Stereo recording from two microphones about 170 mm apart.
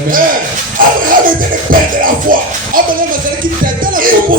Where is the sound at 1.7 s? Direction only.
55° right (ahead or behind).